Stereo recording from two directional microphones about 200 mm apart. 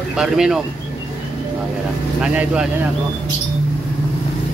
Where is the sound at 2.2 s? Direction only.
5° right (ahead or behind).